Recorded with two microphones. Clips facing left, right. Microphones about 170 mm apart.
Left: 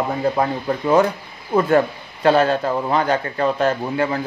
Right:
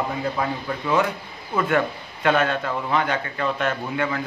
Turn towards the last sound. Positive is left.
turn(degrees=35)  # may be behind; listen again after turning